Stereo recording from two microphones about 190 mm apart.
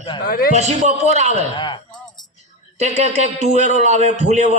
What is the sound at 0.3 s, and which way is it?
Speech, 50° left (ahead or behind).